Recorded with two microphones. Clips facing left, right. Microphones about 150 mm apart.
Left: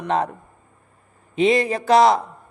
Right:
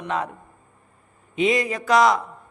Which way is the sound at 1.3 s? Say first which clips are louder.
Left 3 dB; 30° left (ahead or behind).